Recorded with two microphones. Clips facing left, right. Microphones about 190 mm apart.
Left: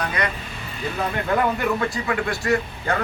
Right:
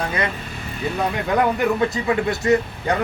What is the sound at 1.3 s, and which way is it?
Speech, 20° right (ahead or behind).